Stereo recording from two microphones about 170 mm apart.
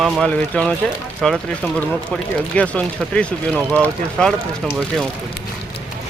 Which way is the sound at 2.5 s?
10° left (ahead or behind).